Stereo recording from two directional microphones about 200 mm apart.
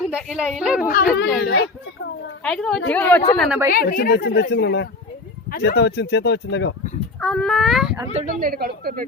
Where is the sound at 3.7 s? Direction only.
45° left (ahead or behind); by 6.7 s 65° left (ahead or behind).